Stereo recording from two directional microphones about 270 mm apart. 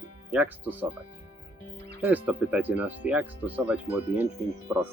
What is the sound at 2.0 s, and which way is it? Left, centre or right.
Speech, centre.